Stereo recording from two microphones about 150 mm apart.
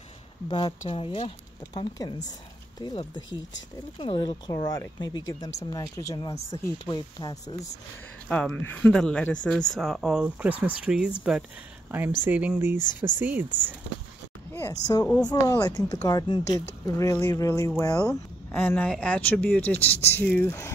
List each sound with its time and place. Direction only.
0.5 s speech: 30° left (ahead or behind)
8.3 s speech: 5° left (ahead or behind); by 13.7 s 10° right (ahead or behind)
14.5 s a sound: 25° left (ahead or behind)
15.2 s speech: 20° left (ahead or behind)